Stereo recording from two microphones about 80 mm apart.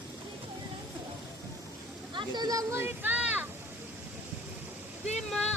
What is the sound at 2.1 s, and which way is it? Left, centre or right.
Speech, right.